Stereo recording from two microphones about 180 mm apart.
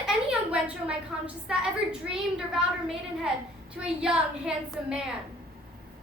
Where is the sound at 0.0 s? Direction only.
5° right (ahead or behind).